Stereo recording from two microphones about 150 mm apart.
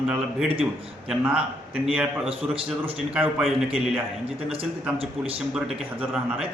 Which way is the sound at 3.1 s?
Centre (ahead or behind).